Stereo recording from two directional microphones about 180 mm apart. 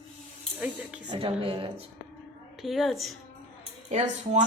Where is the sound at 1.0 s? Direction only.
30° right (ahead or behind).